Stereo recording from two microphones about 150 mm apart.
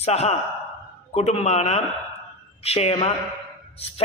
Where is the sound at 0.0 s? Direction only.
45° left (ahead or behind).